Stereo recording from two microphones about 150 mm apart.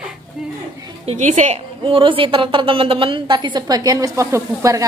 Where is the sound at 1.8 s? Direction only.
35° right (ahead or behind); by 4.8 s 20° right (ahead or behind).